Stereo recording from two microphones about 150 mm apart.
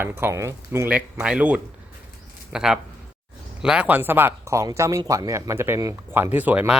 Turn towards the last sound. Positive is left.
turn(degrees=-10)  # may be behind; listen again after turning